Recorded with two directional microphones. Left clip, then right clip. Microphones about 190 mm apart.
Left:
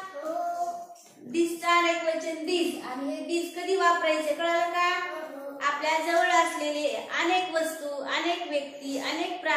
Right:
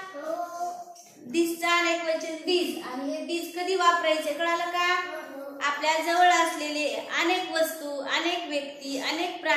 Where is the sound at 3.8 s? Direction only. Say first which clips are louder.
Right 1 dB; 15° right (ahead or behind).